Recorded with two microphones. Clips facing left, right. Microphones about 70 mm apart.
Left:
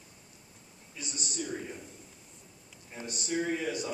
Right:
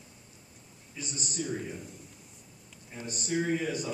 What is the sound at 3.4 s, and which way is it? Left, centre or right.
Speech, centre.